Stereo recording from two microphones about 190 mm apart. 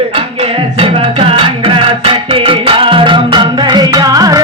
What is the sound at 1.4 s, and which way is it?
Music, 30° right (ahead or behind).